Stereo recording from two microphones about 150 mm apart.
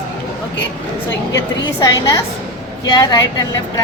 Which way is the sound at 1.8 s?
20° left (ahead or behind).